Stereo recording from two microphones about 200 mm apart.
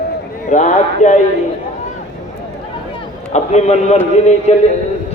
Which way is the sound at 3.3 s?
35° left (ahead or behind).